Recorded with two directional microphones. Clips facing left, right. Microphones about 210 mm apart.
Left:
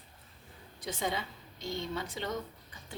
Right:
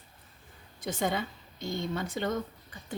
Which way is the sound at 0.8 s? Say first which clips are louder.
Right 4 dB; 50° right (ahead or behind).